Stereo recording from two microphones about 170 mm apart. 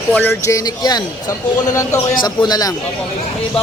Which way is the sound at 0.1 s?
10° left (ahead or behind).